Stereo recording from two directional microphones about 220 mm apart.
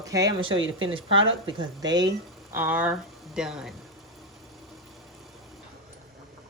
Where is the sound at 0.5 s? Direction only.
60° right (ahead or behind).